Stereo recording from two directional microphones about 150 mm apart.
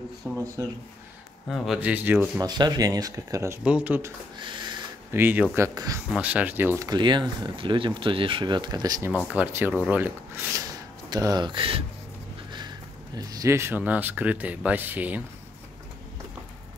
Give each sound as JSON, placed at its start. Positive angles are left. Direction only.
{"t": 0.2, "sound": "speech", "side_deg": -20}
{"t": 1.8, "sound": "speech", "side_deg": -10}
{"t": 2.4, "sound": "speech", "side_deg": -30}
{"t": 3.6, "sound": "speech", "side_deg": -10}
{"t": 4.4, "sound": "a sound", "side_deg": -30}
{"t": 5.1, "sound": "speech", "side_deg": -15}
{"t": 6.1, "sound": "speech", "side_deg": -10}
{"t": 9.1, "sound": "speech", "side_deg": -10}
{"t": 11.1, "sound": "speech", "side_deg": -25}